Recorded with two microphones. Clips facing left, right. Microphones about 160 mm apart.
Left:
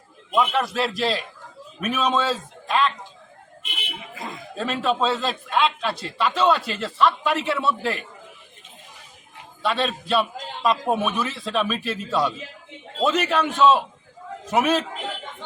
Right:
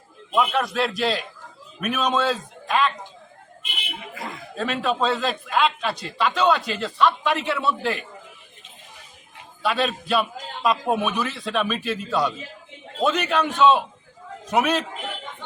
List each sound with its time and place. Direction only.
0.3 s a man's voice: centre (ahead or behind)
4.1 s chuckle: 20° left (ahead or behind)
4.5 s a man's voice: centre (ahead or behind)
9.6 s a man's voice: centre (ahead or behind)